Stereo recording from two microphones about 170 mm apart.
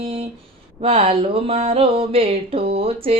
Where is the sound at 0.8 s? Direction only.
35° right (ahead or behind).